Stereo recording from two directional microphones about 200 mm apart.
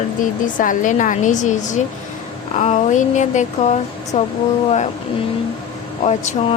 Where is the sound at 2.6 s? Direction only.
40° left (ahead or behind).